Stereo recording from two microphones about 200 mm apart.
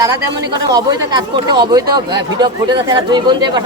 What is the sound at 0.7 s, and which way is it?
Speech, 20° right (ahead or behind).